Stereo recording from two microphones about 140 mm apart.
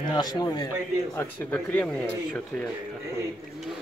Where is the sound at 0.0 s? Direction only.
30° left (ahead or behind).